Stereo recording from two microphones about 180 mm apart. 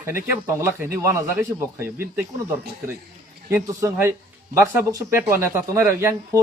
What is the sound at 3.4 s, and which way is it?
Speech, 15° right (ahead or behind).